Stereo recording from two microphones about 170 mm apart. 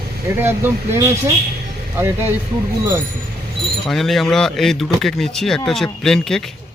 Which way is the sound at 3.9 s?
Centre (ahead or behind).